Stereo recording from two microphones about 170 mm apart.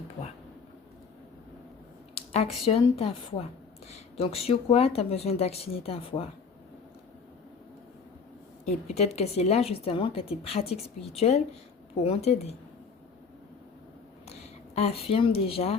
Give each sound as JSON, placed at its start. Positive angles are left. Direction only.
{"t": 2.6, "sound": "a woman's voice", "side_deg": 35}
{"t": 8.6, "sound": "a woman's voice", "side_deg": 40}
{"t": 14.8, "sound": "a woman's voice", "side_deg": 35}